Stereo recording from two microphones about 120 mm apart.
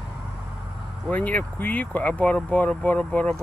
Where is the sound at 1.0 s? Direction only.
10° left (ahead or behind).